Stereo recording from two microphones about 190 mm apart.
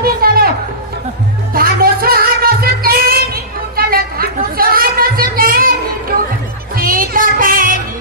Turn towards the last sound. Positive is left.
turn(degrees=-45)  # may be behind; listen again after turning